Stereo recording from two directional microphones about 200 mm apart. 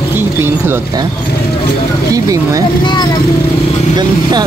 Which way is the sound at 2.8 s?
20° left (ahead or behind).